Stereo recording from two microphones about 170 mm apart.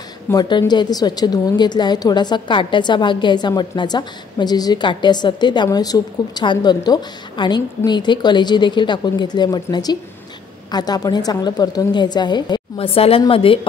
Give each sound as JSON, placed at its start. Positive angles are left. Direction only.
{"t": 0.3, "sound": "a woman's voice", "side_deg": 25}